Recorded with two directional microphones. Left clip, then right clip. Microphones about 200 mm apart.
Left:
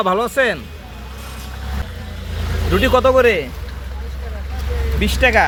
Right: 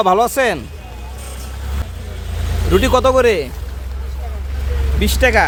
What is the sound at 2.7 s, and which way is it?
Speech, 20° right (ahead or behind).